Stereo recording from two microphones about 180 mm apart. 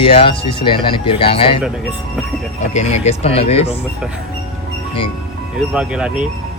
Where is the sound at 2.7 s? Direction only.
40° left (ahead or behind).